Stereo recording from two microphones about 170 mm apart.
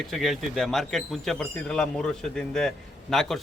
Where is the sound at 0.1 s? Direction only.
Centre (ahead or behind).